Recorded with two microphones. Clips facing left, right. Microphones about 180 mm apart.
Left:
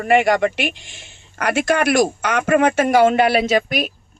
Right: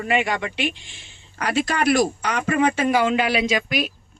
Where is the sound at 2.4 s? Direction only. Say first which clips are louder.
Left 4 dB; 50° left (ahead or behind).